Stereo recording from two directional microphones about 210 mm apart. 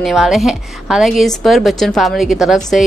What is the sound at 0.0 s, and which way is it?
A woman's voice, centre (ahead or behind).